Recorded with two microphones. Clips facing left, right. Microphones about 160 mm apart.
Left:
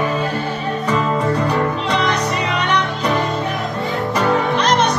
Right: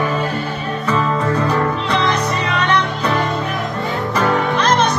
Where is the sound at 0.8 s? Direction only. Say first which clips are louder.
Right 1 dB; 15° left (ahead or behind).